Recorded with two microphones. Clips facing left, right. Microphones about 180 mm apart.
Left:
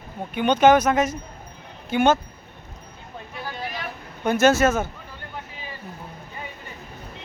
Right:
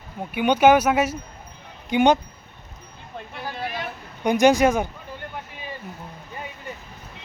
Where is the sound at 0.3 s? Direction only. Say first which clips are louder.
Even; 10° right (ahead or behind).